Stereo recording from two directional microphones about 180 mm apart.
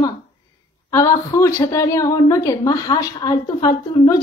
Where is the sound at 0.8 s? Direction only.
15° left (ahead or behind).